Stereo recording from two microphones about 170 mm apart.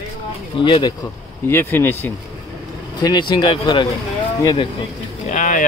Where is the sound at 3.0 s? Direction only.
25° left (ahead or behind).